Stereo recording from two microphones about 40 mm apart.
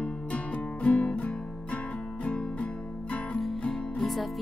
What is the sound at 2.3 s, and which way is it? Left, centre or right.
Guitar, left.